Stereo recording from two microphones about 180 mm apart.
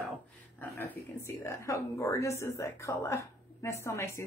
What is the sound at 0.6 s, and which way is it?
A woman's voice, 10° left (ahead or behind).